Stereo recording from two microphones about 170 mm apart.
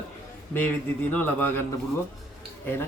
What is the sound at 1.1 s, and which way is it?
Speech, 10° left (ahead or behind).